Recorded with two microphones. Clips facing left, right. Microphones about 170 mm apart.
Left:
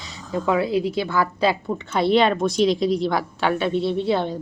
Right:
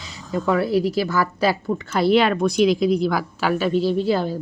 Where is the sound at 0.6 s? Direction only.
20° left (ahead or behind).